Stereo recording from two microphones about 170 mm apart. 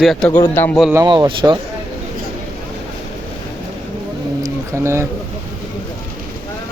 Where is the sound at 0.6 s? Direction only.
10° left (ahead or behind).